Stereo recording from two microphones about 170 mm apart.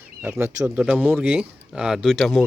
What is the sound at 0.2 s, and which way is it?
Speech, 10° right (ahead or behind).